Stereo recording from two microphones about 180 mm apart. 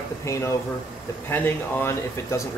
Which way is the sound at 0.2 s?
15° left (ahead or behind).